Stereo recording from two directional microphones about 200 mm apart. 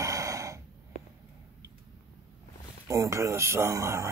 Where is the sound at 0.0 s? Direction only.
15° right (ahead or behind).